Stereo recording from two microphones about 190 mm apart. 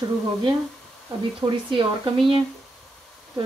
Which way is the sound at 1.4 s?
25° right (ahead or behind).